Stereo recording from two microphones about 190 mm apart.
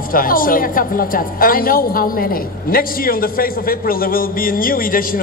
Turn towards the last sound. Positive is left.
turn(degrees=50)  # may be behind; listen again after turning